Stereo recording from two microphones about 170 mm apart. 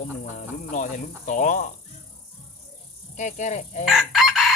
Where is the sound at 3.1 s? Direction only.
45° left (ahead or behind).